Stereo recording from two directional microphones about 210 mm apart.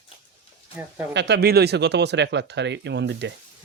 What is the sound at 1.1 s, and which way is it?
Speech, 55° right (ahead or behind).